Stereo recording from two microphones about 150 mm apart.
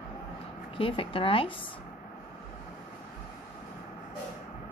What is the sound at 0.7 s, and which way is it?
Speech, 35° left (ahead or behind).